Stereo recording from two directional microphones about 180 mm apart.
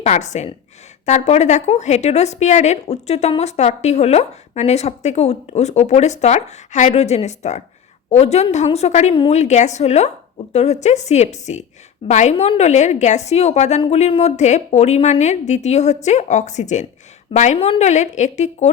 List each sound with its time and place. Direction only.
0.0 s a woman's voice: 40° left (ahead or behind)